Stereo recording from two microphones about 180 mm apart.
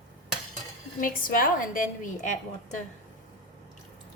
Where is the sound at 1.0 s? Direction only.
50° left (ahead or behind).